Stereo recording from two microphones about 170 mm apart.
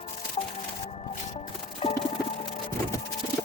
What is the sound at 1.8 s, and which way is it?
Music, 35° left (ahead or behind).